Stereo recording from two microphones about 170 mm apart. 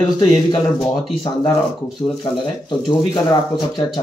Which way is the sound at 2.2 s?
25° left (ahead or behind).